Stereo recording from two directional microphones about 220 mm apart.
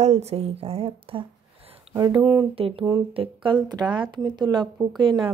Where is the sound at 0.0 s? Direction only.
30° right (ahead or behind).